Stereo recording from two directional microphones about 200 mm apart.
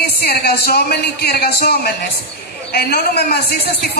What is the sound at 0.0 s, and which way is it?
A woman's voice, 50° left (ahead or behind).